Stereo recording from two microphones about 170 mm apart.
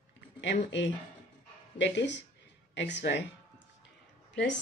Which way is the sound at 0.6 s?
90° left.